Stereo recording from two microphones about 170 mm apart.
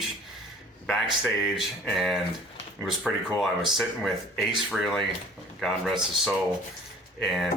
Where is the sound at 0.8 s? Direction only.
Centre (ahead or behind).